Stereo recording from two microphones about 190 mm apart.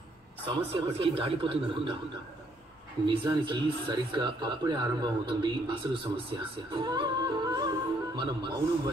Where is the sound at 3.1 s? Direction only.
25° right (ahead or behind).